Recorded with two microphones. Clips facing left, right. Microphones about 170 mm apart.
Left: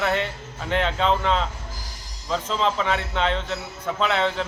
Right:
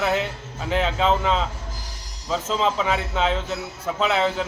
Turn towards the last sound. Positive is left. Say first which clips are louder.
# right 1 dB
turn(degrees=-5)  # may be behind; listen again after turning